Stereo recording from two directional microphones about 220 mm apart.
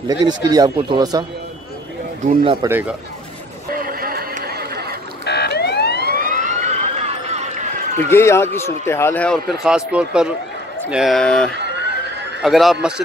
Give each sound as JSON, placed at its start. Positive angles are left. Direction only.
{"t": 0.2, "sound": "speech", "side_deg": -20}
{"t": 2.6, "sound": "speech", "side_deg": -15}
{"t": 3.7, "sound": "a sound", "side_deg": -40}
{"t": 5.2, "sound": "emergency vehicle", "side_deg": 50}
{"t": 6.0, "sound": "emergency vehicle", "side_deg": -40}
{"t": 8.1, "sound": "a man's voice", "side_deg": 10}
{"t": 11.5, "sound": "police car", "side_deg": -50}
{"t": 12.4, "sound": "speech", "side_deg": 0}